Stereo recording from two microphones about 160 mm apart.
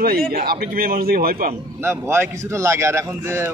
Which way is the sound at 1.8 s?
15° right (ahead or behind).